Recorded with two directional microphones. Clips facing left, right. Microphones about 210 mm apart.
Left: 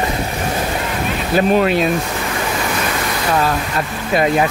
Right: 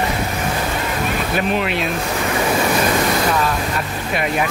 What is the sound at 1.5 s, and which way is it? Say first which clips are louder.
Speech: left 6 dB; 40° left (ahead or behind).